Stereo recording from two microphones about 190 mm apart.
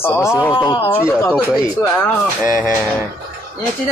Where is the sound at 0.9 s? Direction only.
15° left (ahead or behind).